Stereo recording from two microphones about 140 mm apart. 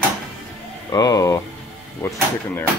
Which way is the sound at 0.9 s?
25° left (ahead or behind).